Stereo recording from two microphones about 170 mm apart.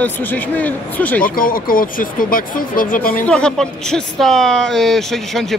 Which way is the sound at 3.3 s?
5° left (ahead or behind).